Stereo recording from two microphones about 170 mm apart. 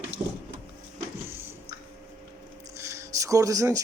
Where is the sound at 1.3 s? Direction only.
15° right (ahead or behind).